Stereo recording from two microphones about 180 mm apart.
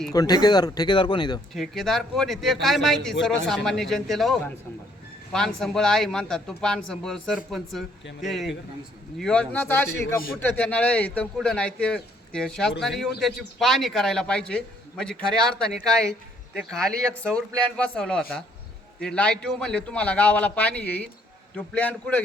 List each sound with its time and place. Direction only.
0.1 s speech: 20° left (ahead or behind)
1.5 s a man's voice: centre (ahead or behind)